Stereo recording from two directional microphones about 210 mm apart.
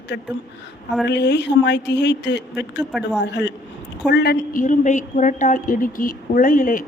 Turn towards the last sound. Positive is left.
turn(degrees=40)  # may be behind; listen again after turning